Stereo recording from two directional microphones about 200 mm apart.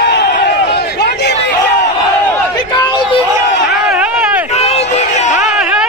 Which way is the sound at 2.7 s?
20° left (ahead or behind).